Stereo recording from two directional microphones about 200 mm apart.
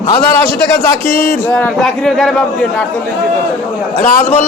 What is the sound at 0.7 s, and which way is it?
A man's voice, 10° left (ahead or behind).